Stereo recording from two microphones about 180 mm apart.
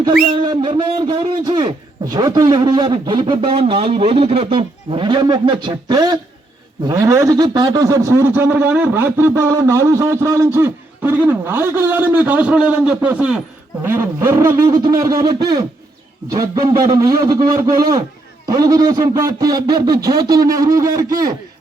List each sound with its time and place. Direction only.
0.3 s a man's voice: 25° right (ahead or behind)